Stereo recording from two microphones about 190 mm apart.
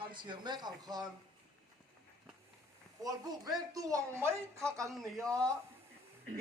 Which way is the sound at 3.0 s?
20° right (ahead or behind).